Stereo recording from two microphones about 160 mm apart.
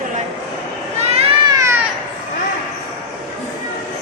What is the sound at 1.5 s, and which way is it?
Baby cry, 20° right (ahead or behind).